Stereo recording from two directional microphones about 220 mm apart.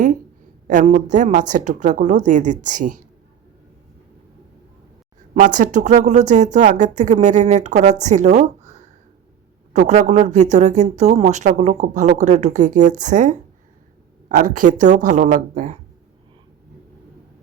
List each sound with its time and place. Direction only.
0.7 s speech: 35° right (ahead or behind)
5.5 s speech: 35° right (ahead or behind)
9.7 s speech: 30° right (ahead or behind)
14.7 s speech: 35° right (ahead or behind)